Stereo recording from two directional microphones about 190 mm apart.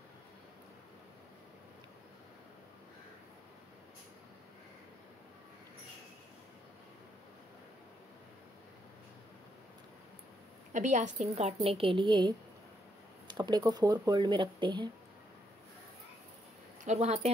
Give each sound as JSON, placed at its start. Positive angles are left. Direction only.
{"t": 10.7, "sound": "a woman's voice", "side_deg": -40}
{"t": 16.8, "sound": "a woman's voice", "side_deg": -35}